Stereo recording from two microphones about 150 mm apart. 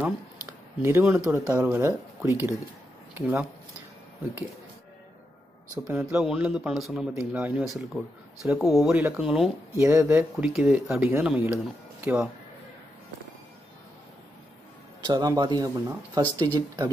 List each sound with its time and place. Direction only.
0.0 s speech: 15° right (ahead or behind)
5.9 s speech: 5° right (ahead or behind)
8.9 s speech: 15° right (ahead or behind)
9.2 s speech: 5° right (ahead or behind)
9.8 s speech: 15° right (ahead or behind)
10.5 s speech: 5° right (ahead or behind)
15.0 s speech: 25° right (ahead or behind)